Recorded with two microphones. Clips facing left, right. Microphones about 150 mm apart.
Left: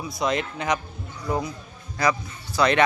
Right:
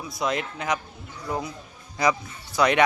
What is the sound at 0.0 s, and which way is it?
Speech, centre (ahead or behind).